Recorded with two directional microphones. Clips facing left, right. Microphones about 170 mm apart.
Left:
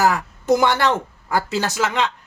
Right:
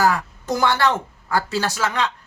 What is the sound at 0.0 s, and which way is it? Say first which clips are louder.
A woman's voice: left 1 dB; 20° left (ahead or behind).